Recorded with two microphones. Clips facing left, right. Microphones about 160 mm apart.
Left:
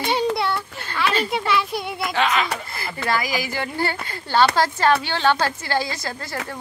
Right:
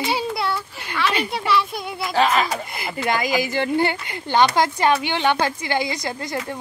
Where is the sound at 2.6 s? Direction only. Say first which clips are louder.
Right 3 dB; 20° right (ahead or behind).